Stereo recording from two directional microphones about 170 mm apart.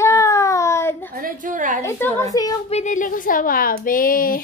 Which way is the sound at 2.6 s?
45° left (ahead or behind).